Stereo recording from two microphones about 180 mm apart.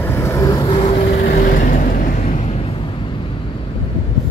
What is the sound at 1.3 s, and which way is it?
Vehicle, 50° left (ahead or behind).